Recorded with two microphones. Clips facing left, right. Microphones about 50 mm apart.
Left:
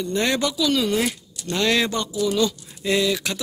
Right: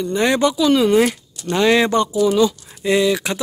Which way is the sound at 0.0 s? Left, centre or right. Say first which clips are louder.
Right 6 dB; centre.